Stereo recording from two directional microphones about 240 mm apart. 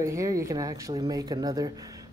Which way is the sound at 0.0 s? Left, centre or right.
Centre.